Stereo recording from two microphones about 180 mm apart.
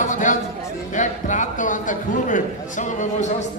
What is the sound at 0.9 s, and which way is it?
A man's voice, 45° left (ahead or behind).